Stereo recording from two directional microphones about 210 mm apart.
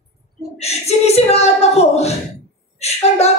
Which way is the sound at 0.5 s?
30° left (ahead or behind).